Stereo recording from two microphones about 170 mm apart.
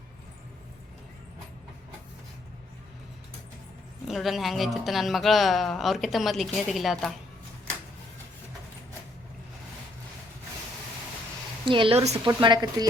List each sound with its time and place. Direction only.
4.0 s a woman's voice: centre (ahead or behind)
11.6 s a woman's voice: 30° right (ahead or behind)
12.4 s a woman's voice: 25° right (ahead or behind)